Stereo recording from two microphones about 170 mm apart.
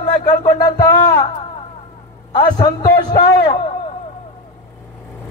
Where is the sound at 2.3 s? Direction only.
25° left (ahead or behind).